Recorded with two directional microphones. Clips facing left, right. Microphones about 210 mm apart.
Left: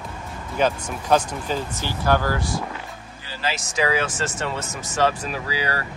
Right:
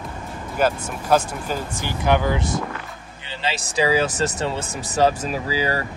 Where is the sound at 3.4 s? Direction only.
30° right (ahead or behind).